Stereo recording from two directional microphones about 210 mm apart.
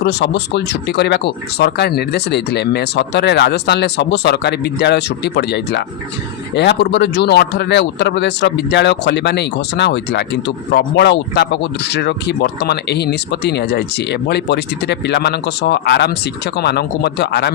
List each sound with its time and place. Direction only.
0.0 s speech: 55° left (ahead or behind)